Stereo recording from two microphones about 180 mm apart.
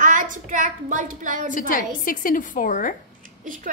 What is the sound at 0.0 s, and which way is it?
A child's voice, 45° right (ahead or behind).